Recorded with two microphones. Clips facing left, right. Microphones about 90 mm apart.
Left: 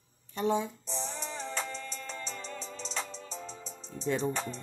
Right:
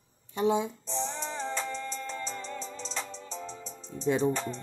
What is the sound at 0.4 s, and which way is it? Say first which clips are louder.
Speech: right 3 dB; 15° right (ahead or behind).